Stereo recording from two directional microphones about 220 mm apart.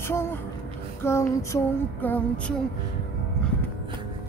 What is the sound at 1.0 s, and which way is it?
Female singing, 10° left (ahead or behind).